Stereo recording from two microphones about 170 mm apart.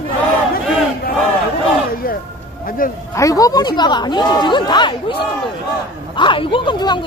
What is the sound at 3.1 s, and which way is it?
A woman's voice, 20° left (ahead or behind).